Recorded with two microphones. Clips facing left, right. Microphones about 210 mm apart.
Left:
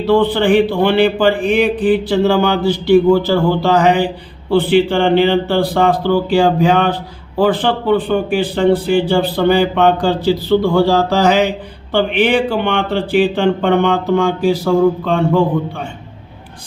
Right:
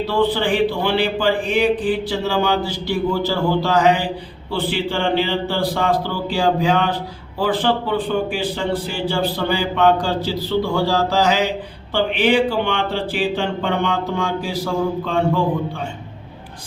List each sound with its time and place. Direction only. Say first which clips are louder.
0.1 s a man's voice: left 8 dB; 55° left (ahead or behind)